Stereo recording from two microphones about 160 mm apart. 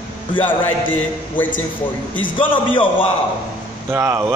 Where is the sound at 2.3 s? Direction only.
35° left (ahead or behind).